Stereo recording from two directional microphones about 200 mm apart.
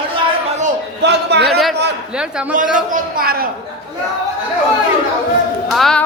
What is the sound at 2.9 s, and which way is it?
Speech, 50° right (ahead or behind).